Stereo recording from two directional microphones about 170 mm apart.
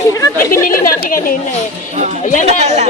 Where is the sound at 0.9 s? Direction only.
55° left (ahead or behind).